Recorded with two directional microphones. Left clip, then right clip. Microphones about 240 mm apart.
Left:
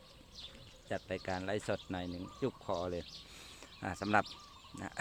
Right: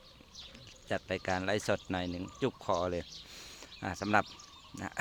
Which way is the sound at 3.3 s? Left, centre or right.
Centre.